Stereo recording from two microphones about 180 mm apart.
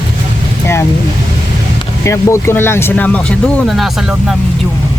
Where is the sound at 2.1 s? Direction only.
15° left (ahead or behind).